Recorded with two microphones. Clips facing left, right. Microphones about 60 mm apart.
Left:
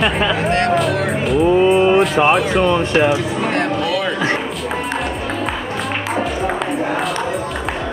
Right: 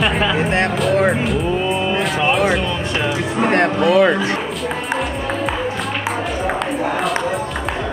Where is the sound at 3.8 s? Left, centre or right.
Right.